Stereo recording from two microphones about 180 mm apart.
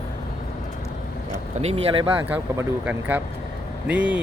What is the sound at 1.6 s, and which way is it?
Speech, 30° right (ahead or behind).